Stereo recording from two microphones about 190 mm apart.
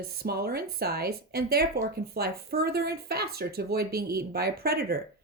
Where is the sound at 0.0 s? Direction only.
55° right (ahead or behind).